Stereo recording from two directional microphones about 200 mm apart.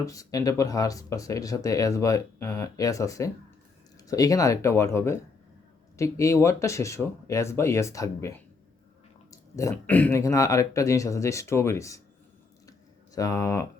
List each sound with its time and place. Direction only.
0.0 s speech: 15° left (ahead or behind)
9.3 s speech: 15° left (ahead or behind)
13.1 s speech: 15° left (ahead or behind)